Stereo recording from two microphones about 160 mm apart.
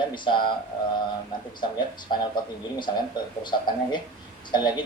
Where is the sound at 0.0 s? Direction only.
30° left (ahead or behind).